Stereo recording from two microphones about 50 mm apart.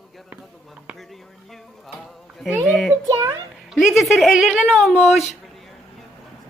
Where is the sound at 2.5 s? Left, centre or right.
Centre.